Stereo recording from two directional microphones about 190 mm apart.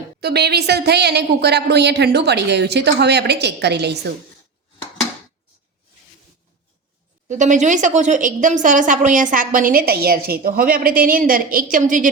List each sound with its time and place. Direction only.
0.2 s a woman's voice: 60° right (ahead or behind)
7.3 s a woman's voice: 40° right (ahead or behind)